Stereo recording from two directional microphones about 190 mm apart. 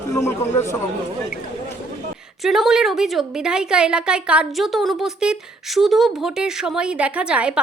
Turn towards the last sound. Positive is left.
turn(degrees=-5)  # may be behind; listen again after turning